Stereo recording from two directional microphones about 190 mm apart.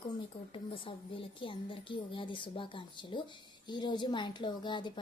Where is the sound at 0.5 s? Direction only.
30° left (ahead or behind).